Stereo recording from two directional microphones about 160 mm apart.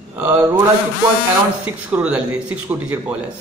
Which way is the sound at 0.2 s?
20° right (ahead or behind).